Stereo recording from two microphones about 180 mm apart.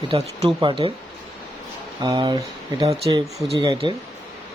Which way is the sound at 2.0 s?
25° right (ahead or behind).